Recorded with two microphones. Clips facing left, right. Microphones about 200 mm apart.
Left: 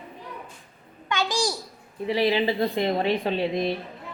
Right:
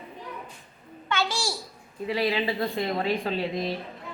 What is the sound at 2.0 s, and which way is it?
A woman's voice, 25° left (ahead or behind).